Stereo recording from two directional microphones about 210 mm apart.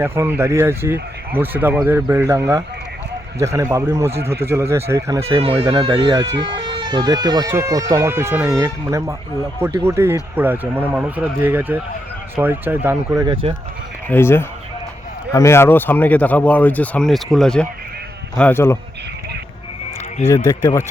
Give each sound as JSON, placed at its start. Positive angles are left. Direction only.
{"t": 0.0, "sound": "speech", "side_deg": -10}
{"t": 5.4, "sound": "speech", "side_deg": -25}
{"t": 14.1, "sound": "speech", "side_deg": 10}
{"t": 20.3, "sound": "speech", "side_deg": 15}